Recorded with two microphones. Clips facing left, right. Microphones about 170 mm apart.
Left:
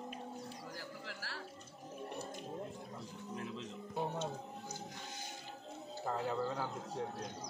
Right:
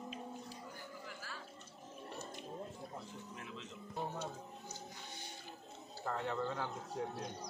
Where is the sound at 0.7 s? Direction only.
85° left.